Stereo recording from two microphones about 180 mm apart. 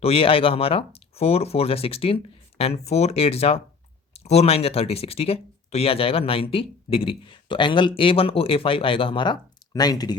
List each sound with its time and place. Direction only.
0.0 s speech: 30° left (ahead or behind)